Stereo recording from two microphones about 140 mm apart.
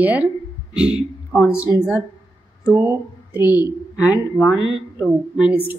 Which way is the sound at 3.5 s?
30° left (ahead or behind).